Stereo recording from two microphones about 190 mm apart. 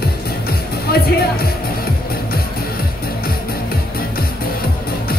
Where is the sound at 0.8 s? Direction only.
55° left (ahead or behind).